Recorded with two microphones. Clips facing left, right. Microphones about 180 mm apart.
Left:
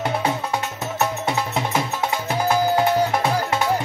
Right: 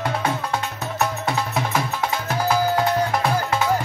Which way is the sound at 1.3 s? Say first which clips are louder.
Left 1 dB; 20° left (ahead or behind).